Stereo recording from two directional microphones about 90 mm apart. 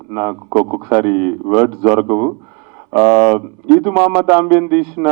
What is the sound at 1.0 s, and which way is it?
A man's voice, 10° right (ahead or behind).